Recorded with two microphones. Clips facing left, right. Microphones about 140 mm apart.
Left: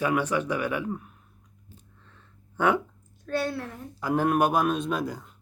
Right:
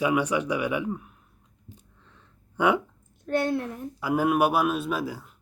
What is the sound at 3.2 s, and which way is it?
Speech, 20° right (ahead or behind).